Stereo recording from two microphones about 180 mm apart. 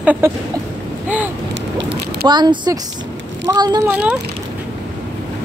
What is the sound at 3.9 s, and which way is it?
Speech, 5° right (ahead or behind).